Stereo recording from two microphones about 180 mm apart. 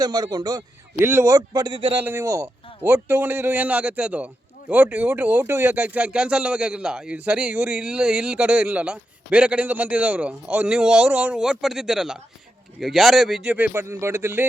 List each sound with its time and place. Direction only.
0.0 s a man's voice: 20° right (ahead or behind)
2.0 s speech: 10° right (ahead or behind)